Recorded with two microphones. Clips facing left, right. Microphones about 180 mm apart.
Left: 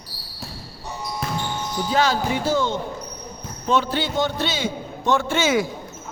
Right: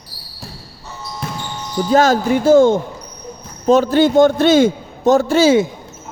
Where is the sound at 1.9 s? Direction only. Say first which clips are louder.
Right 8 dB; 45° right (ahead or behind).